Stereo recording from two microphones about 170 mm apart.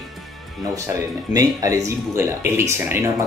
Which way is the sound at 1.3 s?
20° right (ahead or behind).